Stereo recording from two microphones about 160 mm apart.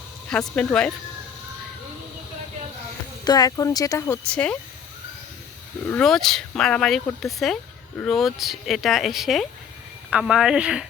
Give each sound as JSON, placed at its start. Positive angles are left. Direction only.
{"t": 0.3, "sound": "speech", "side_deg": 5}
{"t": 3.2, "sound": "speech", "side_deg": 25}
{"t": 4.3, "sound": "speech", "side_deg": 5}
{"t": 5.9, "sound": "speech", "side_deg": 0}